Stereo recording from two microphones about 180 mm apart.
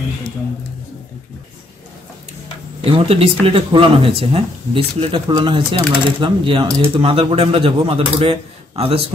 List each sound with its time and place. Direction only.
2.8 s speech: 30° right (ahead or behind)